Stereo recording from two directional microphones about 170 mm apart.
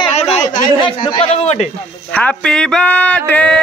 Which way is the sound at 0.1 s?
40° left (ahead or behind).